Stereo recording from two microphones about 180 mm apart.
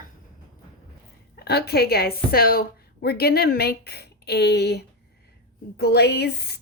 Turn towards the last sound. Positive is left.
turn(degrees=65)  # may be behind; listen again after turning